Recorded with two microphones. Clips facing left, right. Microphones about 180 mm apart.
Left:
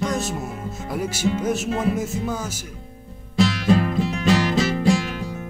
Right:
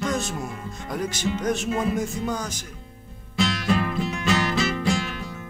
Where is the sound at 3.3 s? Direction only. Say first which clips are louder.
Left 5 dB; 35° left (ahead or behind).